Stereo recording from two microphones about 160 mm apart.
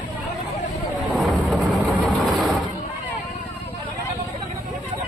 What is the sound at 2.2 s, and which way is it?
Vehicle, centre (ahead or behind).